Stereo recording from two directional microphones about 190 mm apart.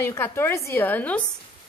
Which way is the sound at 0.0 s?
15° left (ahead or behind).